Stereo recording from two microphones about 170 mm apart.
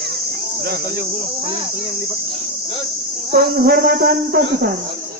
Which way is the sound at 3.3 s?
65° right (ahead or behind).